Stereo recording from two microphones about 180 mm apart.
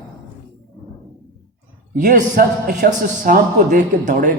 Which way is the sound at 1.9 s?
50° right (ahead or behind).